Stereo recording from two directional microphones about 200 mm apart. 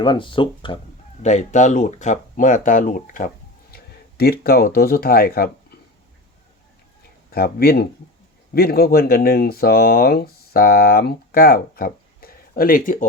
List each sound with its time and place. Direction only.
0.0 s speech: 25° left (ahead or behind)
1.2 s speech: 35° left (ahead or behind)
7.3 s speech: 50° left (ahead or behind)